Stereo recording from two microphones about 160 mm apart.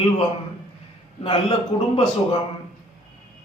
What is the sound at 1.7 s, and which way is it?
Speech, 35° left (ahead or behind).